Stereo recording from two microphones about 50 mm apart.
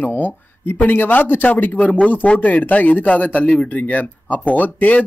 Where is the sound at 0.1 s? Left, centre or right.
Left.